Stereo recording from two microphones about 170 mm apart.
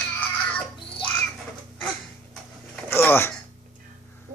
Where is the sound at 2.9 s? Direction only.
15° left (ahead or behind).